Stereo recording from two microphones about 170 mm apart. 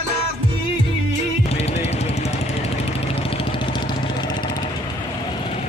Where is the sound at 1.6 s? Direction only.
40° left (ahead or behind).